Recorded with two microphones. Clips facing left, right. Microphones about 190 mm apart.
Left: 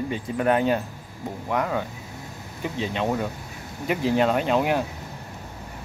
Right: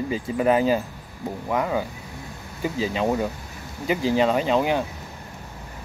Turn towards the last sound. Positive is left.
turn(degrees=0)  # may be behind; listen again after turning